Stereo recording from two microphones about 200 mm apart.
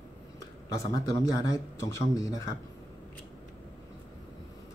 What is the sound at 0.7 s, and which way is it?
Speech, 15° left (ahead or behind).